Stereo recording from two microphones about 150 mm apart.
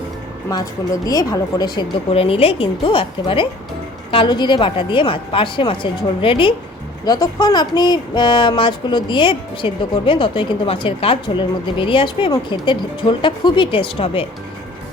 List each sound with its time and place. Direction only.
0.5 s speech: 25° left (ahead or behind)